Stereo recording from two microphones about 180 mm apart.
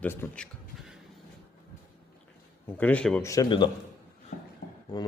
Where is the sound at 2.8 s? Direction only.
10° left (ahead or behind).